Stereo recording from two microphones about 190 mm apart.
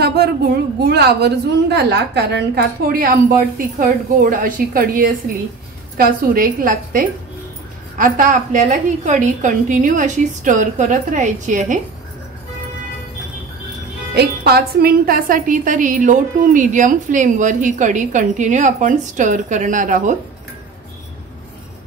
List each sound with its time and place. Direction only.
0.0 s a sound: 55° right (ahead or behind)
0.7 s a woman's voice: 60° right (ahead or behind); by 11.8 s 40° right (ahead or behind)
14.1 s a woman's voice: 55° right (ahead or behind)